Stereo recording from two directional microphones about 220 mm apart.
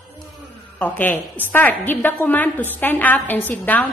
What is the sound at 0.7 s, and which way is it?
A woman's voice, 10° left (ahead or behind).